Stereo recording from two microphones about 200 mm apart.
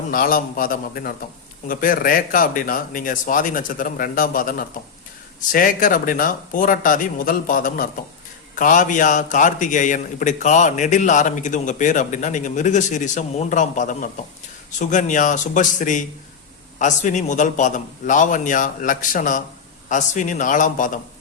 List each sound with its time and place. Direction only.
0.1 s a man's voice: 45° left (ahead or behind)